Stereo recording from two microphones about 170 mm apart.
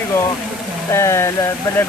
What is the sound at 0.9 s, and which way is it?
Speech, 15° left (ahead or behind).